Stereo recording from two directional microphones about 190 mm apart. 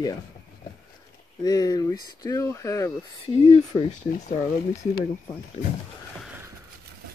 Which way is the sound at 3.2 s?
30° left (ahead or behind).